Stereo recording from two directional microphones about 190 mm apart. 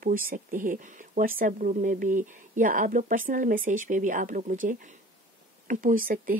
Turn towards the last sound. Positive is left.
turn(degrees=-45)  # may be behind; listen again after turning